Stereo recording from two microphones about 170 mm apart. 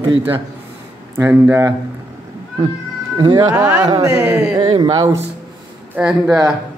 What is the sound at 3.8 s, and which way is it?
Speech, 20° right (ahead or behind).